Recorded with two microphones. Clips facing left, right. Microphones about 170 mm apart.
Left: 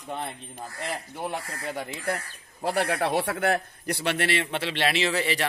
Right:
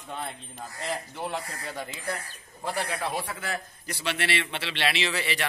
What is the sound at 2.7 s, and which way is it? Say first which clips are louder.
A man's voice: left 6 dB; 65° left (ahead or behind).